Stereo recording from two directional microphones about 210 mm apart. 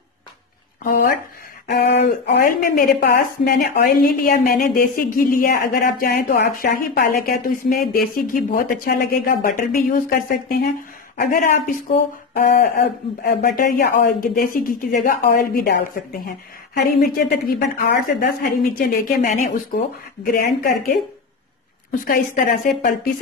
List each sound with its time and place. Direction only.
0.8 s a woman's voice: 45° left (ahead or behind)
17.8 s a woman's voice: 45° left (ahead or behind)
22.0 s a woman's voice: 40° left (ahead or behind)